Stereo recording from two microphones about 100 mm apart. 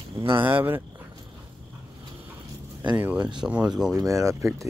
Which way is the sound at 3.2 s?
50° right (ahead or behind).